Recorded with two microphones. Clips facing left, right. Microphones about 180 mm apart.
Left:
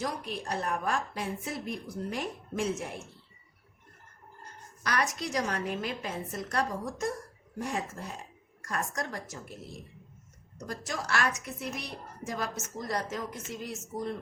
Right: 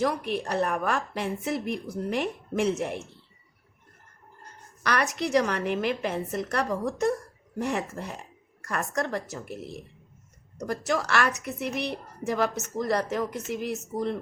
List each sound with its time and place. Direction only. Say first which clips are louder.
0.0 s a woman's voice: right 8 dB; 65° right (ahead or behind)
4.8 s a woman's voice: right 4 dB; 70° right (ahead or behind)
10.7 s a woman's voice: right 7 dB; 70° right (ahead or behind)